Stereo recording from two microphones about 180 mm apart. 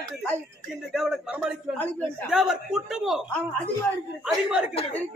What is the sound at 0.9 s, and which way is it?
A man's voice, 5° right (ahead or behind).